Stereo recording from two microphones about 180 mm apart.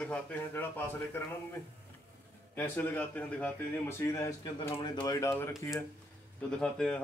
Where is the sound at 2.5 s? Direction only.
10° left (ahead or behind).